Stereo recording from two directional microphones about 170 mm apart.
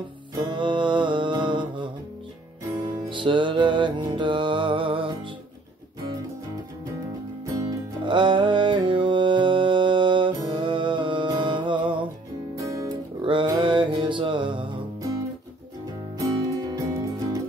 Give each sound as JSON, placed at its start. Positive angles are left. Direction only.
{"t": 0.4, "sound": "music", "side_deg": -25}
{"t": 3.1, "sound": "music", "side_deg": -30}
{"t": 7.4, "sound": "music", "side_deg": -25}
{"t": 12.7, "sound": "music", "side_deg": -30}
{"t": 16.2, "sound": "music", "side_deg": -20}